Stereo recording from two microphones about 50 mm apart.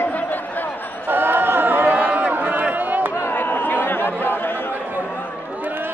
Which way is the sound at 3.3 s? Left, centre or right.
Left.